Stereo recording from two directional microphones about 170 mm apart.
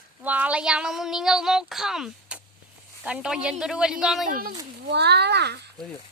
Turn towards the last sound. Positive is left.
turn(degrees=-80)